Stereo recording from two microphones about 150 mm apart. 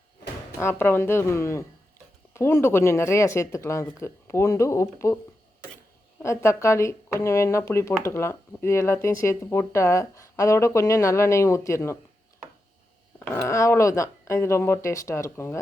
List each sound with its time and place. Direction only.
0.6 s speech: 15° left (ahead or behind)
6.2 s speech: 20° left (ahead or behind)
13.1 s speech: 20° left (ahead or behind)